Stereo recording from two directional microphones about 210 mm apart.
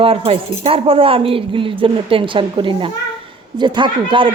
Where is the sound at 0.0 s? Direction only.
25° right (ahead or behind).